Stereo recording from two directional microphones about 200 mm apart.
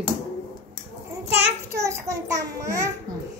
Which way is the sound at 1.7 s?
15° right (ahead or behind).